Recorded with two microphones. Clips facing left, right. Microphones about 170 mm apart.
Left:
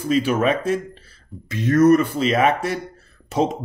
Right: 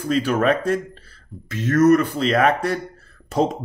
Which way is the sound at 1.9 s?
15° left (ahead or behind).